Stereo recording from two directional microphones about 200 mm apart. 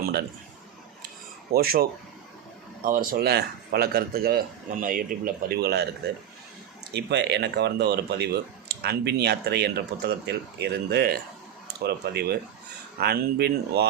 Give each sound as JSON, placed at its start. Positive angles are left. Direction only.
{"t": 0.0, "sound": "a man's voice", "side_deg": -50}
{"t": 1.5, "sound": "a man's voice", "side_deg": -50}
{"t": 6.9, "sound": "a man's voice", "side_deg": -60}